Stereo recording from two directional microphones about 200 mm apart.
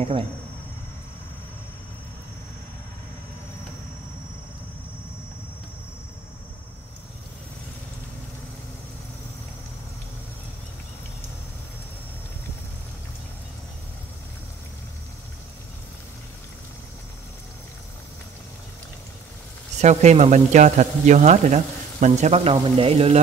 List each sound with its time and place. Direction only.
19.8 s speech: 35° right (ahead or behind)